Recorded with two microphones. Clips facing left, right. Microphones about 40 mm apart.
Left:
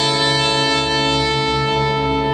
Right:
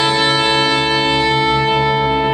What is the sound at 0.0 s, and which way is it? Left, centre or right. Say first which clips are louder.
Music: right 3 dB; right.